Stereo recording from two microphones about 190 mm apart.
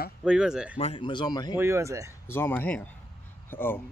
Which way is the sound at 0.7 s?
30° left (ahead or behind).